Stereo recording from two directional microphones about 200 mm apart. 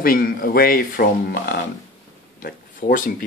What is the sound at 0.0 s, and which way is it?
Speech, 45° left (ahead or behind).